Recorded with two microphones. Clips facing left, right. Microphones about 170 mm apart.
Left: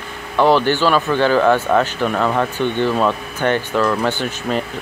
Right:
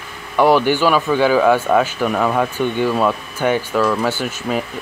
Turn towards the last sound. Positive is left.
turn(degrees=-5)  # may be behind; listen again after turning